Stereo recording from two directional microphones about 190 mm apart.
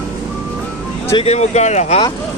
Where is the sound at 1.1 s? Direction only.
35° left (ahead or behind).